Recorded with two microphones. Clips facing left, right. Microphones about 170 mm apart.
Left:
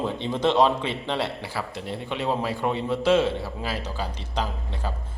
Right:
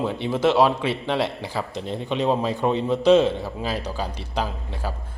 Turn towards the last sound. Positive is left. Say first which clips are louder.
# right 2 dB
turn(degrees=-10)  # may be behind; listen again after turning